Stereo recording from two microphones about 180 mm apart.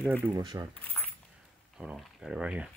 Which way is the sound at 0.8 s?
10° left (ahead or behind).